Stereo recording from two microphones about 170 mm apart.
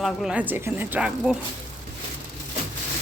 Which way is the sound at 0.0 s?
Centre (ahead or behind).